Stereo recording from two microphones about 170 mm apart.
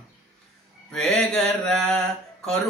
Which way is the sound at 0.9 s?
Centre (ahead or behind).